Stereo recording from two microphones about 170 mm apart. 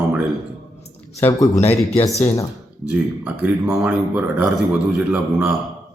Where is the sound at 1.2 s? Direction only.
15° left (ahead or behind).